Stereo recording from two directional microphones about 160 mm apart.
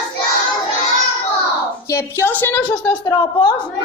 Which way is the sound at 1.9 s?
15° left (ahead or behind).